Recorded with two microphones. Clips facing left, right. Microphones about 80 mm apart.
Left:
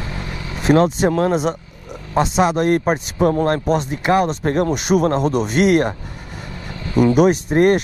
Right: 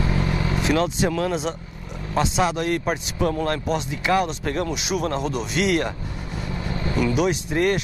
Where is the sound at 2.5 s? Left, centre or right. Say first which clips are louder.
Left 7 dB; left.